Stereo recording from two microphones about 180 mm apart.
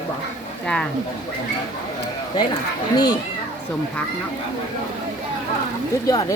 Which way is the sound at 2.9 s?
20° left (ahead or behind).